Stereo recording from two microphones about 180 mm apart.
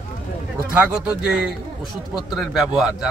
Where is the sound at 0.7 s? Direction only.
10° right (ahead or behind).